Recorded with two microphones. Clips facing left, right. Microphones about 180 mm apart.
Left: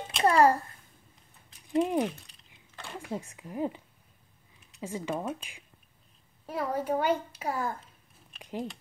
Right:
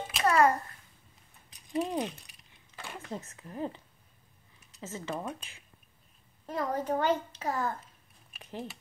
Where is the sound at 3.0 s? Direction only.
10° left (ahead or behind).